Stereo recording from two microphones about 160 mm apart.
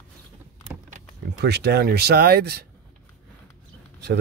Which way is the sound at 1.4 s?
90° right.